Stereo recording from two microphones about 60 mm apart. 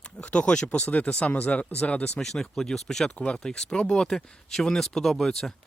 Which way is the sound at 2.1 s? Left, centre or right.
Centre.